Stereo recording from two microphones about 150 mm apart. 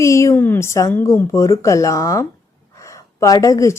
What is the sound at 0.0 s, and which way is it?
A woman's voice, 20° left (ahead or behind).